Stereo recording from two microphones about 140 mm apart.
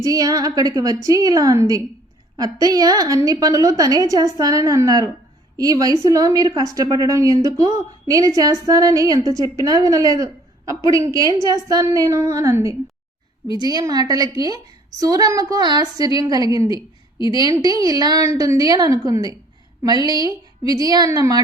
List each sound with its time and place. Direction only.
0.0 s a woman's voice: 25° right (ahead or behind)